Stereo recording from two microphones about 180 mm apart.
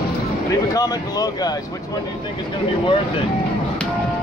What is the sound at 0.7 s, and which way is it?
Speech, 20° left (ahead or behind).